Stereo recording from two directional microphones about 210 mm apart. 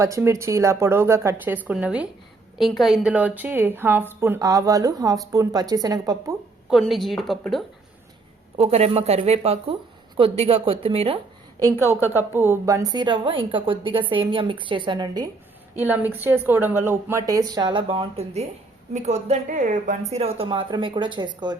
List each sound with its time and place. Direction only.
0.0 s a woman's voice: 15° right (ahead or behind)
6.7 s speech: centre (ahead or behind)
8.5 s a woman's voice: 30° right (ahead or behind)
11.9 s a woman's voice: 10° right (ahead or behind)
15.7 s a woman's voice: 10° right (ahead or behind)